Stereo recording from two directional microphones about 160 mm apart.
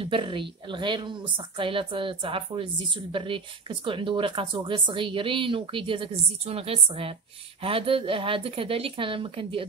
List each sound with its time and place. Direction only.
0.0 s a woman's voice: 30° right (ahead or behind)